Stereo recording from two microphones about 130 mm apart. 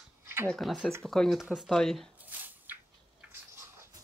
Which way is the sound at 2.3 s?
15° right (ahead or behind).